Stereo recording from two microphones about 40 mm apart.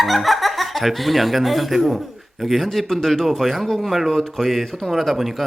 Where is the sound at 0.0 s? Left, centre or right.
Centre.